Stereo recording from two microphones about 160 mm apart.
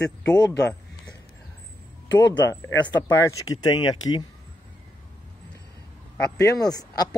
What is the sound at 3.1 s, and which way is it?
Speech, 20° left (ahead or behind).